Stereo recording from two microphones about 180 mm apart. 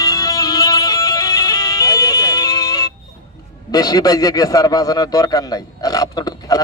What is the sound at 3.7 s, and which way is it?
A man's voice, 20° left (ahead or behind).